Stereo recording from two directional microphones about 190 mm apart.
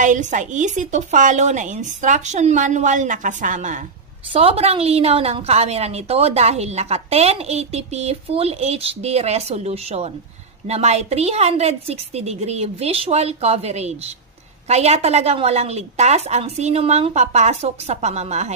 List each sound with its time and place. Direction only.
0.0 s a woman's voice: 40° right (ahead or behind)
4.3 s a woman's voice: 30° right (ahead or behind)